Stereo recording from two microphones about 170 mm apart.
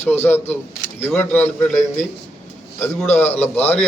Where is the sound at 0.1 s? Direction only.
15° left (ahead or behind).